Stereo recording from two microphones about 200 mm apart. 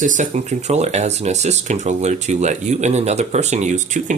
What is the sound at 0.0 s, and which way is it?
Speech, 40° right (ahead or behind).